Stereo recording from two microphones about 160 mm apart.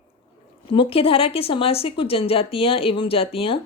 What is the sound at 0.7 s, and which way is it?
A woman's voice, 35° left (ahead or behind).